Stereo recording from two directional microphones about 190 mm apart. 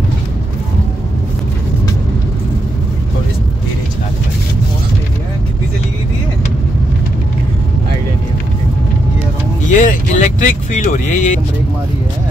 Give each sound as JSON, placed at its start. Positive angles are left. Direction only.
{"t": 9.7, "sound": "speech", "side_deg": 40}